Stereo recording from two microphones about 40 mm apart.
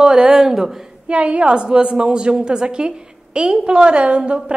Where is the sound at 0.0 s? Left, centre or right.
Right.